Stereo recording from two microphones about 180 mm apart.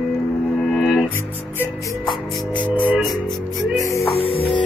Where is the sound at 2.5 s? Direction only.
10° right (ahead or behind).